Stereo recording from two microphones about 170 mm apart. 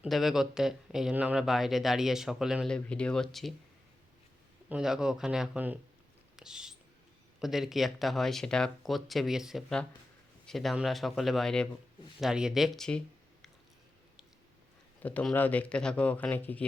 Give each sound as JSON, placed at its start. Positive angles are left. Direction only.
{"t": 0.0, "sound": "speech", "side_deg": 0}
{"t": 4.7, "sound": "speech", "side_deg": -5}
{"t": 6.3, "sound": "whispering", "side_deg": -5}
{"t": 7.4, "sound": "speech", "side_deg": 0}
{"t": 15.0, "sound": "speech", "side_deg": 5}